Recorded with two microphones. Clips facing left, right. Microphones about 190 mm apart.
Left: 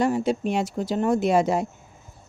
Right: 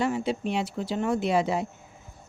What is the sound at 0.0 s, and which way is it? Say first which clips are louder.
Speech: left 4 dB; 45° left (ahead or behind).